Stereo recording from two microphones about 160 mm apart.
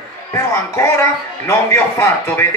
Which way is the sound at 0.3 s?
15° left (ahead or behind).